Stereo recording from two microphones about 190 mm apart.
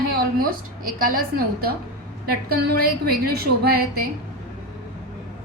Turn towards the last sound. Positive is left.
turn(degrees=-55)  # may be behind; listen again after turning